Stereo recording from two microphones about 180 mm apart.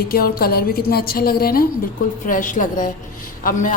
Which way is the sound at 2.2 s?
45° left (ahead or behind).